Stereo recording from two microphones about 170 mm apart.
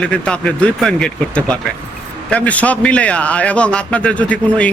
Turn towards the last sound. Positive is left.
turn(degrees=10)  # may be behind; listen again after turning